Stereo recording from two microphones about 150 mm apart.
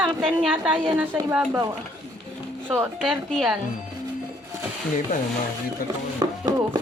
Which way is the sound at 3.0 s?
Centre (ahead or behind).